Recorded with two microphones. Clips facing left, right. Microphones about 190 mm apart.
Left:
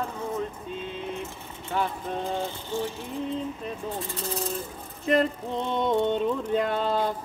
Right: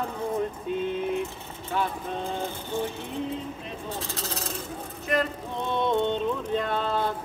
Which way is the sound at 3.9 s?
90° right.